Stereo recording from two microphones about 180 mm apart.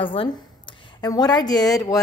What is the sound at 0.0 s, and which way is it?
A woman's voice, 30° left (ahead or behind).